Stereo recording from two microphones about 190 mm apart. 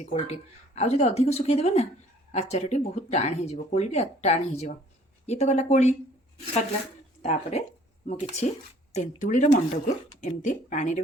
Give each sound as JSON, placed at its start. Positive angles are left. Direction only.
{"t": 0.0, "sound": "speech", "side_deg": 35}
{"t": 7.2, "sound": "speech", "side_deg": 35}